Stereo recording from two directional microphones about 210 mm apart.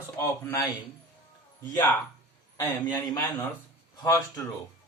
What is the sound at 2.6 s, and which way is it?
Speech, 20° left (ahead or behind).